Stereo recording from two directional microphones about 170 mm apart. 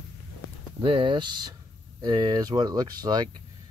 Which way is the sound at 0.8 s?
30° right (ahead or behind).